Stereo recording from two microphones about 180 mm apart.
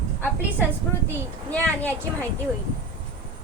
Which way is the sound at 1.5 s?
10° left (ahead or behind).